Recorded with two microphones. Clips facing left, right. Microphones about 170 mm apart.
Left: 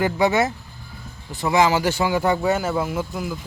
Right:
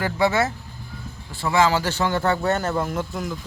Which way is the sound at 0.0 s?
15° left (ahead or behind).